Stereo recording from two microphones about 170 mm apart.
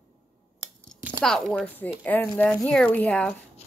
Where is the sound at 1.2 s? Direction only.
5° left (ahead or behind).